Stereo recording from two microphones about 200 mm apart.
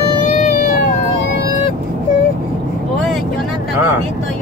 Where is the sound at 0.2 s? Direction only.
45° left (ahead or behind).